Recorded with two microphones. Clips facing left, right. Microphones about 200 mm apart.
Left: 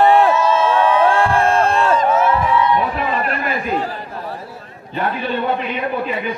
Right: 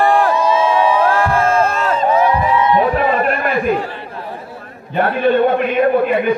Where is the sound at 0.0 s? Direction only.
25° left (ahead or behind).